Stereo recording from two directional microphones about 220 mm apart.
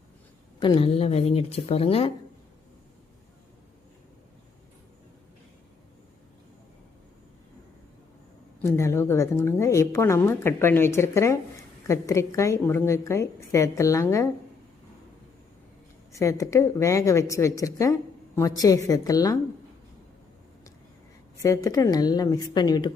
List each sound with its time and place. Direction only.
0.6 s speech: 20° left (ahead or behind)
8.6 s a woman's voice: 10° left (ahead or behind)
16.1 s a woman's voice: 15° left (ahead or behind)
21.3 s a woman's voice: 15° left (ahead or behind)